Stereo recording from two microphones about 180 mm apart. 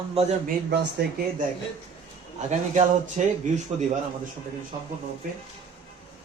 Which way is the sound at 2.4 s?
40° right (ahead or behind).